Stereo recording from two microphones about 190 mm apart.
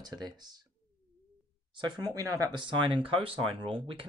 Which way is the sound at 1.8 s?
25° right (ahead or behind).